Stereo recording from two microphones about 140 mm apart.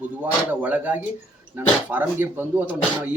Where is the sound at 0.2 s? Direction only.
10° right (ahead or behind).